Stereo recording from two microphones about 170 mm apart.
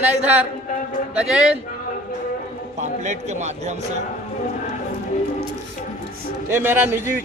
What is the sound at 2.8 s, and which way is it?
A man's voice, 45° right (ahead or behind).